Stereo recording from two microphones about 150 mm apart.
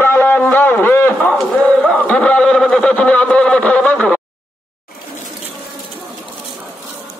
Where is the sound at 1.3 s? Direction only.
5° left (ahead or behind).